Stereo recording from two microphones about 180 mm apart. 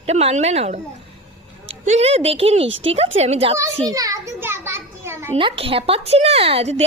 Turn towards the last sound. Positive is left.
turn(degrees=-35)  # may be behind; listen again after turning